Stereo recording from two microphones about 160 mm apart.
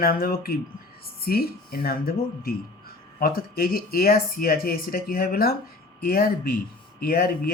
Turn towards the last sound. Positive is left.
turn(degrees=70)  # may be behind; listen again after turning